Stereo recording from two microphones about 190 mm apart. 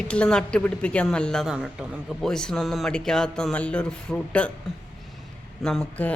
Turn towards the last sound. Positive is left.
turn(degrees=5)  # may be behind; listen again after turning